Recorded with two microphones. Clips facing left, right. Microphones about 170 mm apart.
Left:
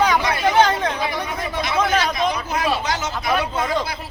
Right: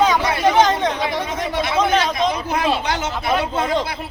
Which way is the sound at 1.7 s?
25° right (ahead or behind).